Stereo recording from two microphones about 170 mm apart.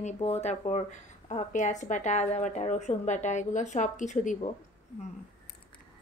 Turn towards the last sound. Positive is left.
turn(degrees=45)  # may be behind; listen again after turning